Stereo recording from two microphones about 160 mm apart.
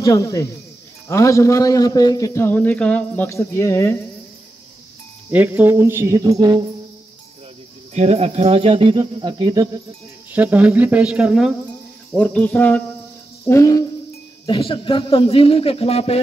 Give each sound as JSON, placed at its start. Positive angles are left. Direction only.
{"t": 0.0, "sound": "a man's voice", "side_deg": 20}
{"t": 5.3, "sound": "speech", "side_deg": -10}
{"t": 6.4, "sound": "cricket", "side_deg": -30}
{"t": 7.9, "sound": "speech", "side_deg": -45}
{"t": 10.3, "sound": "a man's voice", "side_deg": -10}
{"t": 13.5, "sound": "speech", "side_deg": 20}
{"t": 14.4, "sound": "speech", "side_deg": 30}